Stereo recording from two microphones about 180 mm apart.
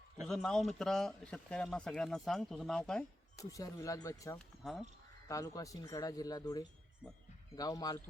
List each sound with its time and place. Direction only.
0.2 s speech: centre (ahead or behind)
3.3 s speech: 20° left (ahead or behind)
4.4 s speech: centre (ahead or behind)
5.3 s speech: 20° left (ahead or behind)